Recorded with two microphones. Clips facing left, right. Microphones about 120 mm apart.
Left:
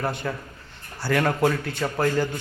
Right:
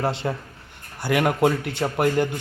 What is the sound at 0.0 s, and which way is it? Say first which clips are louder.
A man's voice: right 3 dB; 25° right (ahead or behind).